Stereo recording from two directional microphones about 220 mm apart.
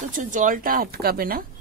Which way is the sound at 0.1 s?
35° right (ahead or behind).